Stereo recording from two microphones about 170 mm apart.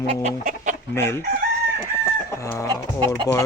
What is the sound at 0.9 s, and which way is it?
Speech, 15° left (ahead or behind).